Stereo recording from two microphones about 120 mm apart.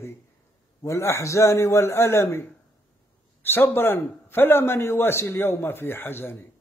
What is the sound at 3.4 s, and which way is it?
A man's voice, 20° left (ahead or behind).